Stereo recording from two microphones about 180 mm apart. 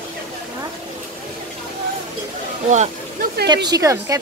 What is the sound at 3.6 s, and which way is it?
Speech, 20° right (ahead or behind).